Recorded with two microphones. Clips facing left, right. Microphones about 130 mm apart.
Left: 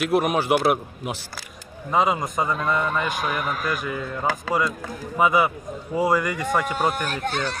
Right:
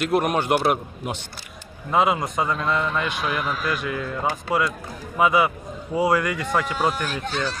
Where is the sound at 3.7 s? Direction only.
Centre (ahead or behind).